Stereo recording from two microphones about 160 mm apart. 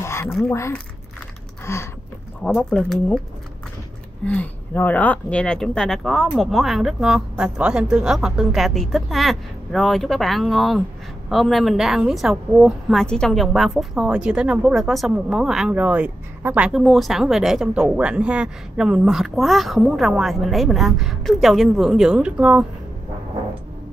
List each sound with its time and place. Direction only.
0.0 s a sound: 15° left (ahead or behind)
0.5 s speech: 15° left (ahead or behind)
2.4 s a woman's voice: 5° left (ahead or behind)
4.3 s a woman's voice: 10° left (ahead or behind); by 22.7 s 5° right (ahead or behind)